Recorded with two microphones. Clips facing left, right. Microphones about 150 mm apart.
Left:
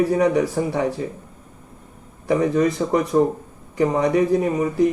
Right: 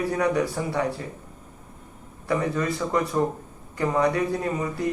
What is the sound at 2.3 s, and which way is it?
A man's voice, 20° left (ahead or behind).